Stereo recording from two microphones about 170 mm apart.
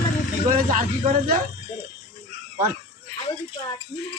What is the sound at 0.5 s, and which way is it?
Speech, 50° right (ahead or behind).